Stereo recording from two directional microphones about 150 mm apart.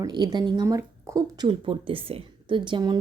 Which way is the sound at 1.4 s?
35° right (ahead or behind).